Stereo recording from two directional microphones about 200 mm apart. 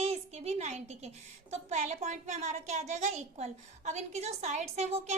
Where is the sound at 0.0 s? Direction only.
30° right (ahead or behind).